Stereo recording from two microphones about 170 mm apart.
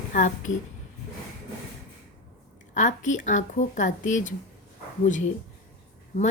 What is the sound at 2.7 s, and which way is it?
A woman's voice, 45° left (ahead or behind).